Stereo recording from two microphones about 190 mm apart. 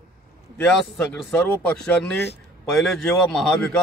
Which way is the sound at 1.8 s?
5° left (ahead or behind).